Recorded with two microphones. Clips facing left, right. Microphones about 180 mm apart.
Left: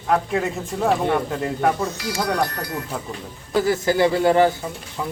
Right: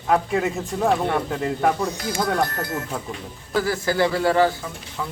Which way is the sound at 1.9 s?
50° right (ahead or behind).